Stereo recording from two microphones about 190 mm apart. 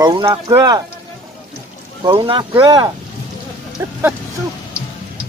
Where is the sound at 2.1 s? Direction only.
25° right (ahead or behind).